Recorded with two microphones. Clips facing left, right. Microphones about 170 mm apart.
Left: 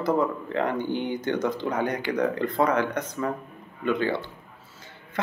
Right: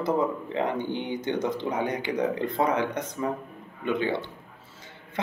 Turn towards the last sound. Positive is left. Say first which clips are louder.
# left 1 dB
turn(degrees=-20)  # may be behind; listen again after turning